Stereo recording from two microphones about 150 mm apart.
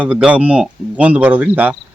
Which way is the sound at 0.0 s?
10° right (ahead or behind).